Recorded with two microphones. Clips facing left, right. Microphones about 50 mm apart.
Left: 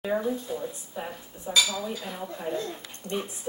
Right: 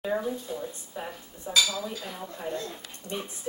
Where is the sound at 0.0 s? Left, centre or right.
Centre.